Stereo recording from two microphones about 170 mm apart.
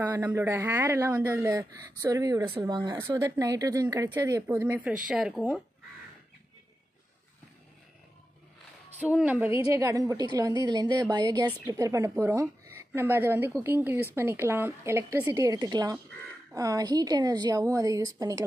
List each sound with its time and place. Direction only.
0.0 s a man's voice: 10° right (ahead or behind)
9.1 s a man's voice: 10° right (ahead or behind)